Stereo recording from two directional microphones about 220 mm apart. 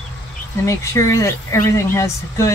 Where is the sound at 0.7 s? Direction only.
15° left (ahead or behind).